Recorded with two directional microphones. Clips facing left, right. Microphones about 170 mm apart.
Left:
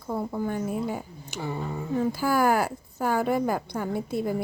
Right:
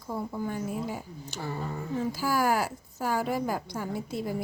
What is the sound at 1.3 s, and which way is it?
Speech, 15° left (ahead or behind).